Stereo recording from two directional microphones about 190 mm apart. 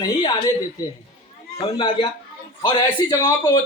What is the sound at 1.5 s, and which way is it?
A man's voice, 25° left (ahead or behind).